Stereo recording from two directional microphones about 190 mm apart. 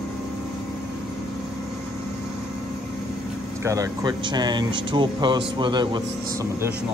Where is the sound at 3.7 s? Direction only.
20° right (ahead or behind).